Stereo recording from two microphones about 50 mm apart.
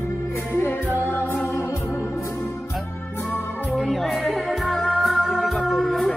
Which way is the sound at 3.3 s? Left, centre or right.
Left.